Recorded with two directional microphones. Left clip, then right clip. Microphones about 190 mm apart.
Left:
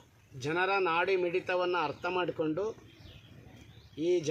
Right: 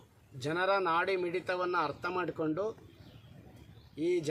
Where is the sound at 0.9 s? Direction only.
5° right (ahead or behind).